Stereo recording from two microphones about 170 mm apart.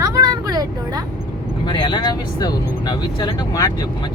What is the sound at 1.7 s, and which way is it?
Speech, 25° left (ahead or behind).